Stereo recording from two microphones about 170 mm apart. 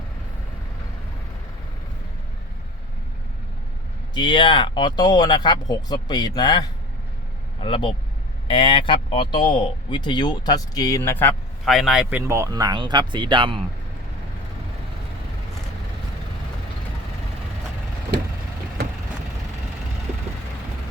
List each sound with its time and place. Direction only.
4.1 s speech: 25° left (ahead or behind); by 11.3 s 10° left (ahead or behind)
11.6 s speech: centre (ahead or behind)
12.3 s speech: 20° right (ahead or behind)